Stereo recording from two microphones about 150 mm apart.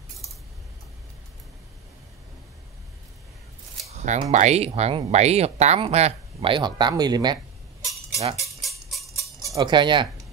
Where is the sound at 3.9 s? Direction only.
50° right (ahead or behind); by 7.3 s 25° right (ahead or behind).